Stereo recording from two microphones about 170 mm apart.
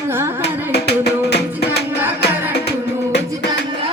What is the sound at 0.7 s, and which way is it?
Hands, 75° left (ahead or behind).